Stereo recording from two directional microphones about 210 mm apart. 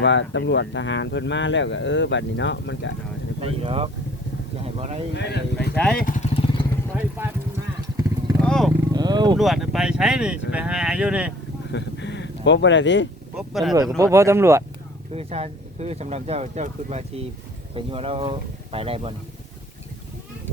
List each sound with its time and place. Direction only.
0.0 s speech: 60° left (ahead or behind)
3.4 s speech: 25° right (ahead or behind)
5.1 s speech: 50° left (ahead or behind)
5.7 s speech: 5° left (ahead or behind)
6.0 s speech: 40° left (ahead or behind)
6.3 s vehicle: 25° left (ahead or behind)
8.4 s vehicle: 5° left (ahead or behind)
8.9 s wild animals: 20° right (ahead or behind)
9.4 s speech: centre (ahead or behind)
11.7 s a sound: 55° left (ahead or behind)
13.3 s speech: centre (ahead or behind)
14.0 s speech: 15° right (ahead or behind)
15.1 s speech: 30° right (ahead or behind)